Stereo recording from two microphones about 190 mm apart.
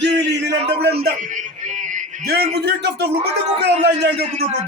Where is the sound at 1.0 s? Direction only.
40° right (ahead or behind).